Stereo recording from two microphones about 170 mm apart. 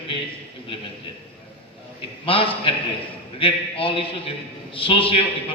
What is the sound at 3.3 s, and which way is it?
A man's voice, 30° left (ahead or behind).